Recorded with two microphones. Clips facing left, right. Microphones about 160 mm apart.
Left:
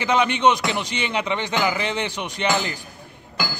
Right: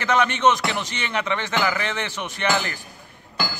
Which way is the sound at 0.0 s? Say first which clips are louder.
Left 1 dB; 10° left (ahead or behind).